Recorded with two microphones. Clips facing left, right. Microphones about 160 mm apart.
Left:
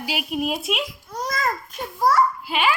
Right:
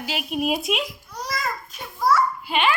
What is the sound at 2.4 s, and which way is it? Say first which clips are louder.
Speech: even; 5° left (ahead or behind).